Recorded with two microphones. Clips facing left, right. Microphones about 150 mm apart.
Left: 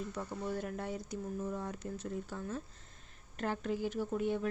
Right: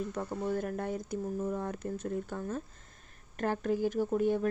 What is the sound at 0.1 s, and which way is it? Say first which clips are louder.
Speech: right 5 dB; 50° right (ahead or behind).